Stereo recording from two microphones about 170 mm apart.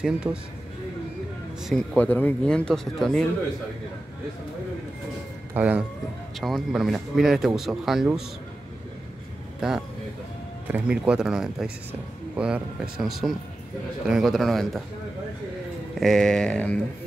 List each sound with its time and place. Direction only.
0.0 s speech: 5° right (ahead or behind)
1.7 s speech: 10° left (ahead or behind)
5.5 s speech: 10° right (ahead or behind)
10.7 s speech: 5° right (ahead or behind)
16.0 s speech: centre (ahead or behind)